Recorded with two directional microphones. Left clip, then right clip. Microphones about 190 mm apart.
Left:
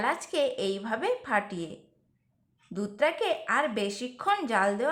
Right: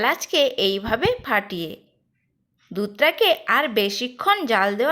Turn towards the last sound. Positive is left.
turn(degrees=-30)  # may be behind; listen again after turning